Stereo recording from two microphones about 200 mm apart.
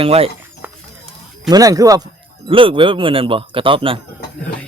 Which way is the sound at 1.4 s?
20° right (ahead or behind).